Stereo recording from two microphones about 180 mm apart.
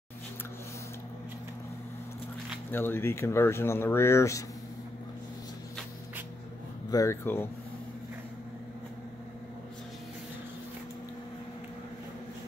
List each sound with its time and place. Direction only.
2.7 s speech: 10° left (ahead or behind)
6.9 s speech: 15° left (ahead or behind)